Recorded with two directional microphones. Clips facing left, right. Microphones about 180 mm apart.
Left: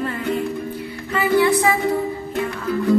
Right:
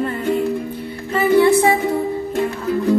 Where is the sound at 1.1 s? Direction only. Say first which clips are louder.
Right 4 dB; 25° right (ahead or behind).